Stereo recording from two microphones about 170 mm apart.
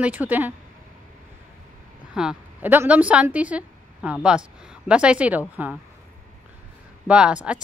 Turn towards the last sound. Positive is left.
turn(degrees=-5)  # may be behind; listen again after turning